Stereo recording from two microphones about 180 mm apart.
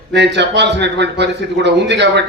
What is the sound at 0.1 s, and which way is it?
Speech, 70° right (ahead or behind).